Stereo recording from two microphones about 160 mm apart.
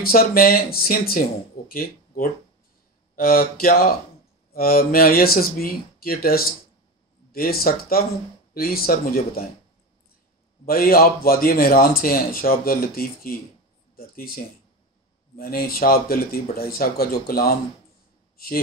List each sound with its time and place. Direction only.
0.0 s a man's voice: 65° left (ahead or behind)
10.6 s a man's voice: 65° left (ahead or behind)